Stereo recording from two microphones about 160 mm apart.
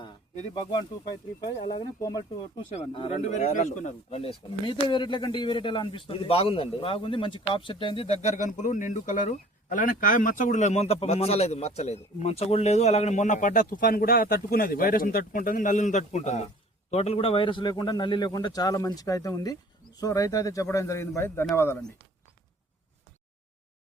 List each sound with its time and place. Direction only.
2.0 s a man's voice: 20° left (ahead or behind)
2.6 s a man's voice: 35° left (ahead or behind); by 21.8 s 15° left (ahead or behind)